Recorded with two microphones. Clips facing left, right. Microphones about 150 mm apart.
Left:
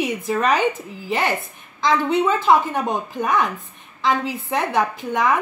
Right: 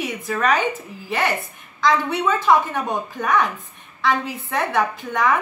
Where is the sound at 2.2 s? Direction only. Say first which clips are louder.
Right 1 dB; 15° left (ahead or behind).